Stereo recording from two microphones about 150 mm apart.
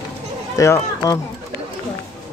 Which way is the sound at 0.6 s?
20° left (ahead or behind).